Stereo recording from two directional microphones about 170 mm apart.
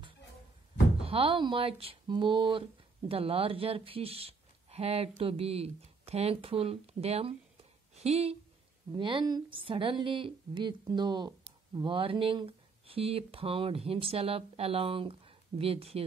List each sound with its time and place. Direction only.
1.0 s a woman's voice: 30° right (ahead or behind)